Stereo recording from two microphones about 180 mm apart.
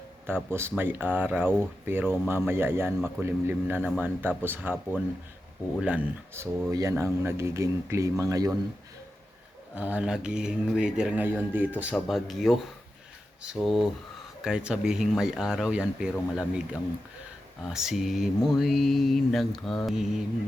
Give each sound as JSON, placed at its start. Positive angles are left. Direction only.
{"t": 0.3, "sound": "speech", "side_deg": -15}
{"t": 9.7, "sound": "speech", "side_deg": -10}
{"t": 17.7, "sound": "speech", "side_deg": 0}